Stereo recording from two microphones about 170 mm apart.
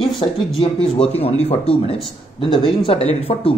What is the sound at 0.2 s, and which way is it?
Speech, 25° left (ahead or behind).